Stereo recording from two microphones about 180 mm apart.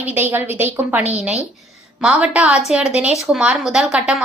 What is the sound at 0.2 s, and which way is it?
A woman's voice, 10° right (ahead or behind).